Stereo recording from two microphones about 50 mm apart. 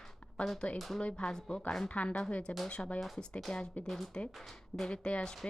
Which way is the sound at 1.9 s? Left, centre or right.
Left.